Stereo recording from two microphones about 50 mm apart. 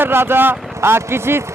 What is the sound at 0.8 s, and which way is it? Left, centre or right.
Speech, right.